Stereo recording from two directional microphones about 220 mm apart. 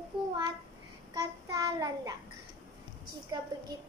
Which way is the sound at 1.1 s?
15° right (ahead or behind).